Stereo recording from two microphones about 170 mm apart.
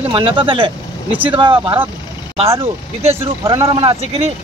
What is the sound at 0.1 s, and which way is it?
Speech, 30° right (ahead or behind).